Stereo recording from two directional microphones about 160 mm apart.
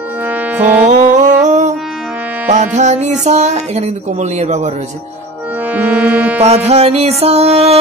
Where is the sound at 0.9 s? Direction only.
50° right (ahead or behind).